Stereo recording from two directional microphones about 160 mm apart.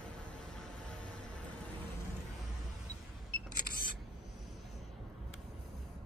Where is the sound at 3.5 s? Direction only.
70° left (ahead or behind).